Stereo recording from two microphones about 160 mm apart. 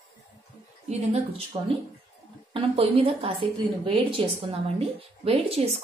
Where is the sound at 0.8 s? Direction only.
40° right (ahead or behind).